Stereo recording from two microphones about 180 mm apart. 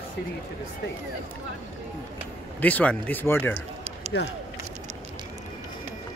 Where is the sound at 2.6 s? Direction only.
10° left (ahead or behind).